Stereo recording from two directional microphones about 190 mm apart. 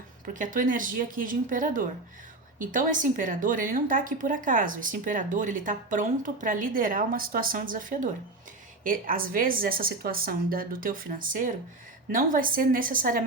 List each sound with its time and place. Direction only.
0.3 s a woman's voice: 45° right (ahead or behind)